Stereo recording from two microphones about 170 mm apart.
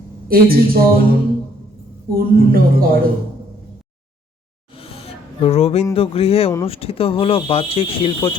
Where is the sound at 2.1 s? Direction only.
60° right (ahead or behind).